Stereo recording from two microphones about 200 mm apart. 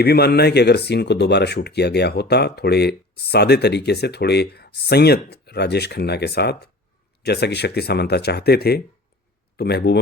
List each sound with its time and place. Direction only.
0.0 s speech: 50° left (ahead or behind)